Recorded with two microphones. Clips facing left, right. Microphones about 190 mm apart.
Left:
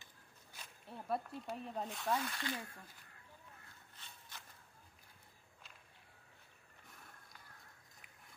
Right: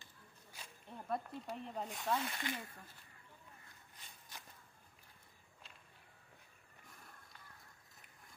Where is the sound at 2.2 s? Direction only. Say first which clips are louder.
Even; 20° right (ahead or behind).